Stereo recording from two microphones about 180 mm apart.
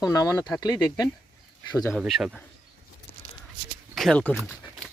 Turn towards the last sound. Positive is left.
turn(degrees=5)  # may be behind; listen again after turning